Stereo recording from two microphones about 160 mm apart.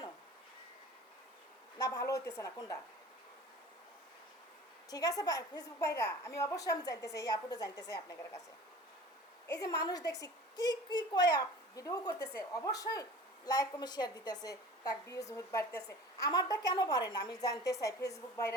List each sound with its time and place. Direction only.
1.8 s a woman's voice: 20° left (ahead or behind)
4.9 s a woman's voice: 25° left (ahead or behind)
9.5 s a woman's voice: 25° left (ahead or behind)